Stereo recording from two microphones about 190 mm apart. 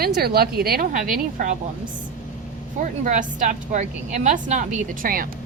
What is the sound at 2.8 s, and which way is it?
A woman's voice, 40° right (ahead or behind).